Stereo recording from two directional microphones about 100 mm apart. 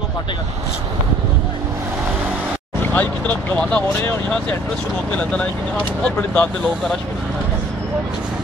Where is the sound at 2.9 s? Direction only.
15° left (ahead or behind).